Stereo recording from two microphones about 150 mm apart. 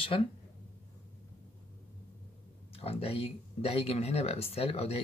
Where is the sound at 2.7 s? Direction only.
40° left (ahead or behind).